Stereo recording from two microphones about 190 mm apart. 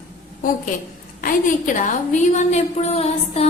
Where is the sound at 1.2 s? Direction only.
45° left (ahead or behind).